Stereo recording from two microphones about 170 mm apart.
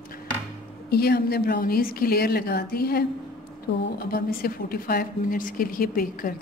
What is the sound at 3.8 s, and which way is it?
A woman's voice, 75° left (ahead or behind).